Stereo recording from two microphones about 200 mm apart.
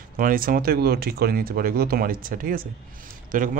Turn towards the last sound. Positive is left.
turn(degrees=-40)  # may be behind; listen again after turning